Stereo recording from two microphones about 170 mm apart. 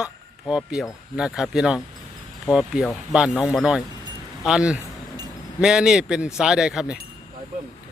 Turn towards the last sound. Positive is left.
turn(degrees=-5)  # may be behind; listen again after turning